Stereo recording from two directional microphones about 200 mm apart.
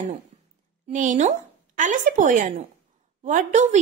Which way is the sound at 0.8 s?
40° right (ahead or behind).